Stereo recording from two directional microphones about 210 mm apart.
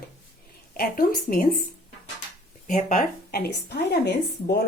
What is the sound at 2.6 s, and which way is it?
A woman's voice, 35° left (ahead or behind).